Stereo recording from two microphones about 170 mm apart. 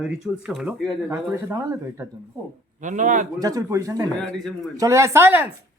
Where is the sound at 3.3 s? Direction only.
20° right (ahead or behind).